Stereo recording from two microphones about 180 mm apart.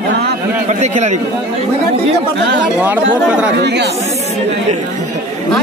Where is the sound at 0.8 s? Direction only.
40° right (ahead or behind).